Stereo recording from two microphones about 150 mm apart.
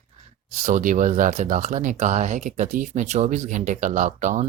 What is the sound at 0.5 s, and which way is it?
Speech, 55° right (ahead or behind).